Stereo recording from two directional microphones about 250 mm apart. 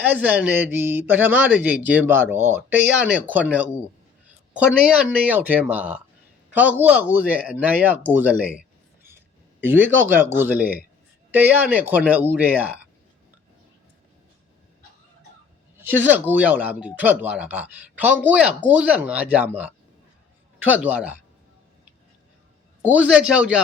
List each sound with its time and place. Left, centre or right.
0.0 s a man's voice: centre
15.8 s a man's voice: centre
22.8 s speech: centre